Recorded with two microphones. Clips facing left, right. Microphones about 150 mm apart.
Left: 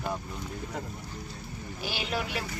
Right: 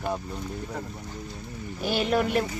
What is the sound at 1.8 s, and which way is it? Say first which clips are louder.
Speech: right 9 dB; 50° right (ahead or behind).